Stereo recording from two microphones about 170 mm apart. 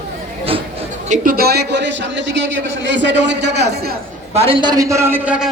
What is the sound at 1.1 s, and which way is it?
A man's voice, 55° right (ahead or behind).